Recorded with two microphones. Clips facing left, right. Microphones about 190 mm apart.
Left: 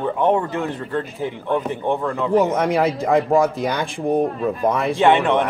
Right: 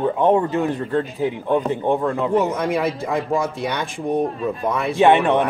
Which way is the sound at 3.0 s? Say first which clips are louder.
Left 5 dB; 65° left (ahead or behind).